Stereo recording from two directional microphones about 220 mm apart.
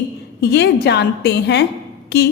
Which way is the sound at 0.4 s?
50° left (ahead or behind).